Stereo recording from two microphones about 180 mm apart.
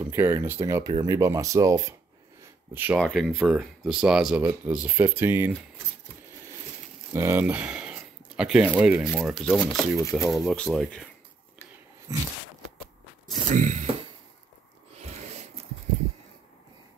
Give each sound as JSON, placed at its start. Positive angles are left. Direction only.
{"t": 0.0, "sound": "speech", "side_deg": -15}
{"t": 3.0, "sound": "speech", "side_deg": 0}
{"t": 7.2, "sound": "speech", "side_deg": -15}
{"t": 12.1, "sound": "a sound", "side_deg": -20}
{"t": 13.5, "sound": "speech", "side_deg": -45}
{"t": 15.0, "sound": "a sound", "side_deg": -40}